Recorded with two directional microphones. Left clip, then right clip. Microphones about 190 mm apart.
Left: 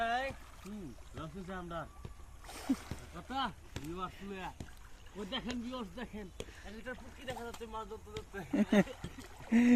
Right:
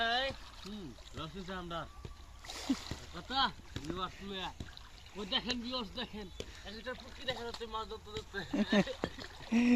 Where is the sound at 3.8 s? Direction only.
50° right (ahead or behind).